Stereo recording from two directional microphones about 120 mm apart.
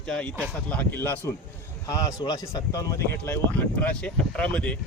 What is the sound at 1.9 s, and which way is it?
Speech, 30° left (ahead or behind).